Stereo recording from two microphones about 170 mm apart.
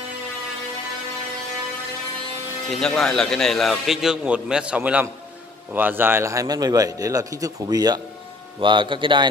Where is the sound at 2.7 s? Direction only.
5° left (ahead or behind).